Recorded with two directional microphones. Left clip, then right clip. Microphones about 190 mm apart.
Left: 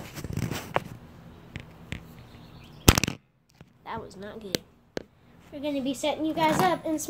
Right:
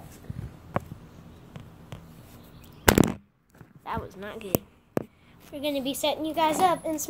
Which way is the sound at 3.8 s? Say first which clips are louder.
Right 3 dB; 10° right (ahead or behind).